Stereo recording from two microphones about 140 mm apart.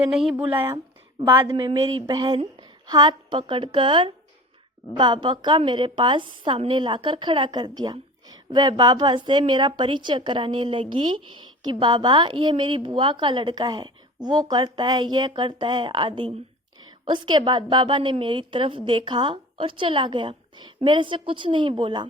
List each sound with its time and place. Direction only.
0.0 s speech: 5° right (ahead or behind)
0.5 s speech: 15° right (ahead or behind)
1.5 s a woman's voice: 35° right (ahead or behind)